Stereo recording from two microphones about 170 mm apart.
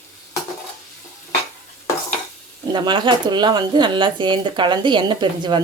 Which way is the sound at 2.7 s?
30° right (ahead or behind).